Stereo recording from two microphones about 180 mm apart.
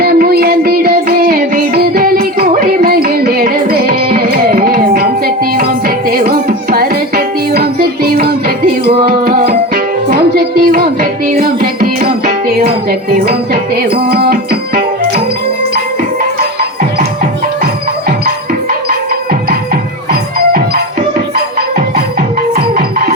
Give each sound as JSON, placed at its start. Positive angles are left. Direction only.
{"t": 0.0, "sound": "music", "side_deg": -60}
{"t": 18.7, "sound": "music", "side_deg": -55}
{"t": 21.3, "sound": "music", "side_deg": -55}